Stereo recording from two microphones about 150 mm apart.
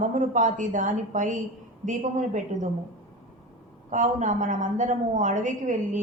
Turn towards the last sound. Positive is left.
turn(degrees=-55)  # may be behind; listen again after turning